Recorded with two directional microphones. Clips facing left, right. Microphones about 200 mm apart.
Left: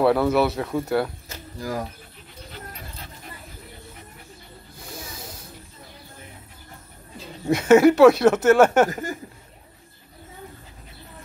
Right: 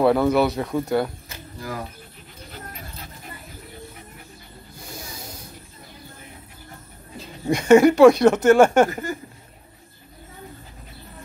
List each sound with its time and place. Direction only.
0.0 s speech: 5° left (ahead or behind)
1.3 s a sound: 40° left (ahead or behind)
7.4 s speech: 5° left (ahead or behind)